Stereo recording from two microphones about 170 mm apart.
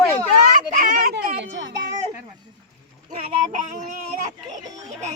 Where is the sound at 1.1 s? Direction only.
90° right.